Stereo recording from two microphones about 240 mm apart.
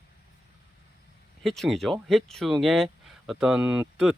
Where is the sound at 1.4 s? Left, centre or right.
Centre.